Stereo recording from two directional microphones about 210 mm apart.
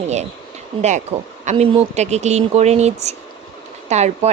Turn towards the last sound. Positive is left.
turn(degrees=-30)  # may be behind; listen again after turning